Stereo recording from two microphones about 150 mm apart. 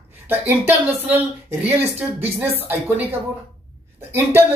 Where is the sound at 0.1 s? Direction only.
15° right (ahead or behind).